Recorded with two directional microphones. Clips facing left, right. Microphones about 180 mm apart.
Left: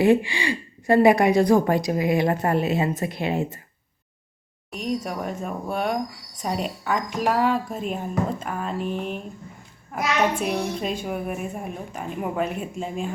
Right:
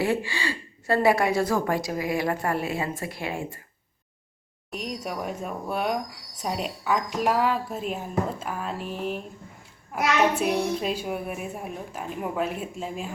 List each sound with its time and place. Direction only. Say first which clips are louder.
0.0 s a woman's voice: left 7 dB; 20° left (ahead or behind)
4.7 s a woman's voice: left 5 dB; 5° right (ahead or behind)
10.4 s a woman's voice: right 1 dB; centre (ahead or behind)